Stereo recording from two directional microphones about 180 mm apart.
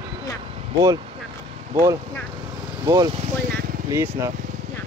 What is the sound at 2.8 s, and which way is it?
Speech, 15° right (ahead or behind).